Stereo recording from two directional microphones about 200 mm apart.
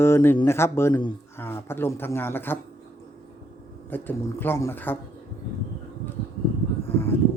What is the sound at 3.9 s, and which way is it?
Speech, 10° left (ahead or behind).